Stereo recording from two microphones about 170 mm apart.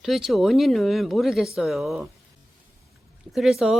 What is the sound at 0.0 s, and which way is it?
Speech, centre (ahead or behind).